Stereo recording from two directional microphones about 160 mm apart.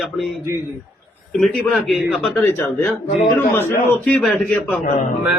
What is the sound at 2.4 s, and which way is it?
A man's voice, 15° left (ahead or behind).